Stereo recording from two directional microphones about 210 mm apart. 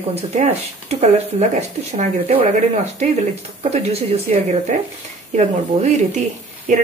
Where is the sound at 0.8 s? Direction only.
35° right (ahead or behind).